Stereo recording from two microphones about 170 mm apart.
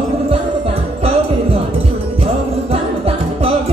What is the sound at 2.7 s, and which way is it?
Music, 35° right (ahead or behind).